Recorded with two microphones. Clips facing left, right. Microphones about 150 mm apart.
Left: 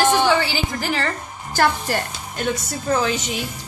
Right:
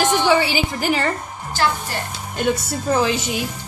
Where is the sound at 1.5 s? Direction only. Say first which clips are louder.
Left 2 dB; 45° left (ahead or behind).